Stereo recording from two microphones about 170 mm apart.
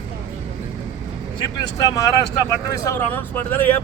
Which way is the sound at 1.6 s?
25° left (ahead or behind).